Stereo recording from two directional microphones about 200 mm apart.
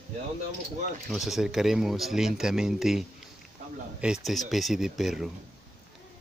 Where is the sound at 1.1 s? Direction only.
Centre (ahead or behind).